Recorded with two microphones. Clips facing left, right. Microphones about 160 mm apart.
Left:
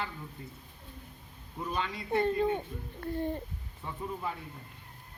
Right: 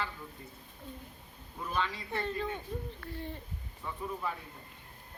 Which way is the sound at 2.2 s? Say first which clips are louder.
Left 7 dB; 50° left (ahead or behind).